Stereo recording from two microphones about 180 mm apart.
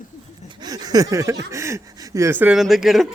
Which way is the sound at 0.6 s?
20° right (ahead or behind).